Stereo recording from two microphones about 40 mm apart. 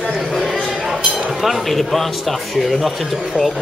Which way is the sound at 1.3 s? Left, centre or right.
Centre.